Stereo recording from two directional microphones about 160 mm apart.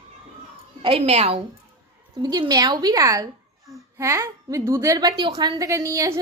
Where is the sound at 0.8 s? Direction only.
35° right (ahead or behind).